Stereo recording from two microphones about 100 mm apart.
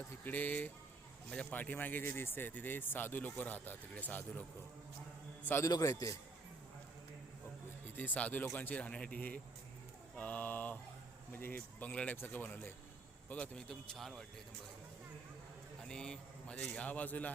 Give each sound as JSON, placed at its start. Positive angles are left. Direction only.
{"t": 0.3, "sound": "speech", "side_deg": 15}
{"t": 5.6, "sound": "a man's voice", "side_deg": 35}
{"t": 7.9, "sound": "a man's voice", "side_deg": 15}
{"t": 15.9, "sound": "speech", "side_deg": 10}